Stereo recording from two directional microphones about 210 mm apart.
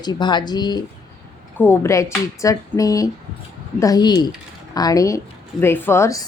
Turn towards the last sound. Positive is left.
turn(degrees=15)  # may be behind; listen again after turning